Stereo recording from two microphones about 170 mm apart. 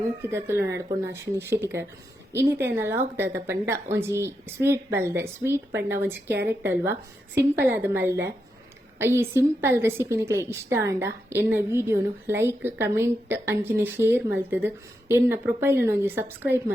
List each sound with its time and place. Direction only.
0.2 s a woman's voice: 15° right (ahead or behind)